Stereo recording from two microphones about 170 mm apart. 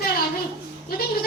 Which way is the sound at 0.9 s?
60° left (ahead or behind).